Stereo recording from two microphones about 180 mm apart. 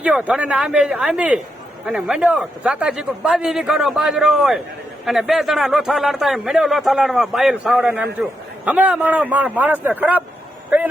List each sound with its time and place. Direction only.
0.0 s a man's voice: 5° right (ahead or behind)